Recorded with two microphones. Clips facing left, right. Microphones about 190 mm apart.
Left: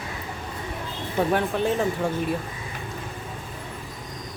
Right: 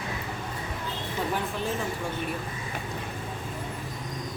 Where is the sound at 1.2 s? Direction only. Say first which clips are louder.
Left 8 dB; 65° left (ahead or behind).